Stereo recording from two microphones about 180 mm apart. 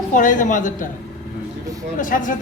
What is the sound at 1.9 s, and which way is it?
Speech, 45° left (ahead or behind).